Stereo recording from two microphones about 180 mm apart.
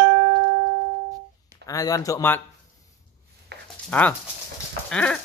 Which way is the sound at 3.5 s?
65° right (ahead or behind).